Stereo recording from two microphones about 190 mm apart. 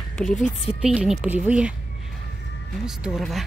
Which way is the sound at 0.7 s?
5° right (ahead or behind).